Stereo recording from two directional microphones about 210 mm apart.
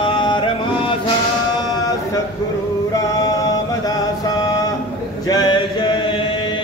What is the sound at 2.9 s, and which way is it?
Mantra, 15° left (ahead or behind).